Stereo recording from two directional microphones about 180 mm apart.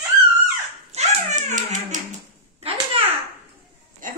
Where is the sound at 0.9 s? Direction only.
45° right (ahead or behind).